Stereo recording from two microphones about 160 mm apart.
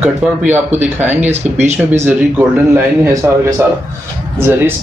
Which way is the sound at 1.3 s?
45° right (ahead or behind).